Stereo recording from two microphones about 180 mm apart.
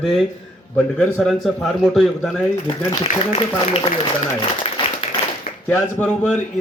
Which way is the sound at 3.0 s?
30° left (ahead or behind).